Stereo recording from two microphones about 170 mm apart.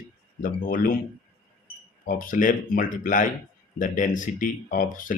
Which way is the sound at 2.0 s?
50° left (ahead or behind).